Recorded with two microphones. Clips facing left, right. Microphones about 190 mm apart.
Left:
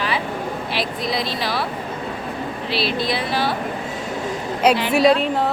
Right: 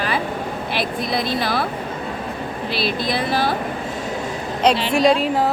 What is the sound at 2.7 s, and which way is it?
Speech, 50° right (ahead or behind).